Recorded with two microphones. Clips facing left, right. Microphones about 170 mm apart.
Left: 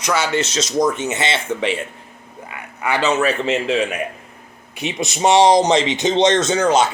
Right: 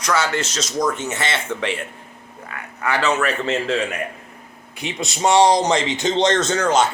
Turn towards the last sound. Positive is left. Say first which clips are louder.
# left 2 dB
turn(degrees=15)  # may be behind; listen again after turning